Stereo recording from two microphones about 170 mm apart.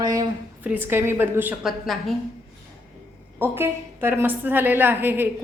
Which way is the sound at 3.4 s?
15° right (ahead or behind).